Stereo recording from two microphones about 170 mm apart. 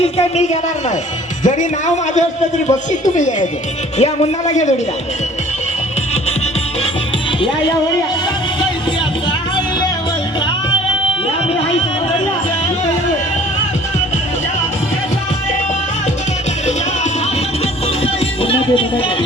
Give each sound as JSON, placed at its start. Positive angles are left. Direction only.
{"t": 2.6, "sound": "a man's voice", "side_deg": 45}
{"t": 18.0, "sound": "music", "side_deg": 35}